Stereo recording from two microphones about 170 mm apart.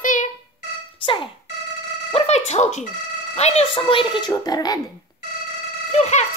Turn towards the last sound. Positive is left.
turn(degrees=40)  # may be behind; listen again after turning